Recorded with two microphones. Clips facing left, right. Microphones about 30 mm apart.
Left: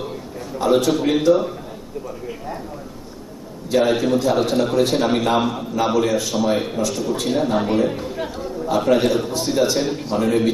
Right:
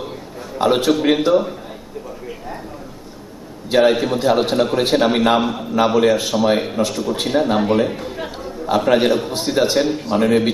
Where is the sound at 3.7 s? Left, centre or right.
Right.